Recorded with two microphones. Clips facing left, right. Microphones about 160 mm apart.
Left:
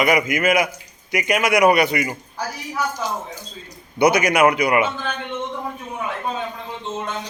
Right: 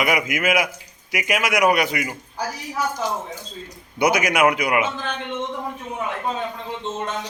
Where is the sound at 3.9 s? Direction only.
Centre (ahead or behind).